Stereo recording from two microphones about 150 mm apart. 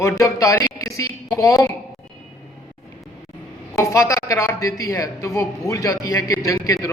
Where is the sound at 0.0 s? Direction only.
20° left (ahead or behind).